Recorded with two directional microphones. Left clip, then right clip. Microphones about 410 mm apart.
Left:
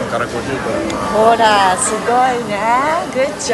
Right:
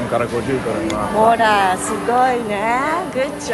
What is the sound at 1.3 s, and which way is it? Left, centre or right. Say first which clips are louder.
Speech: left 4 dB; centre.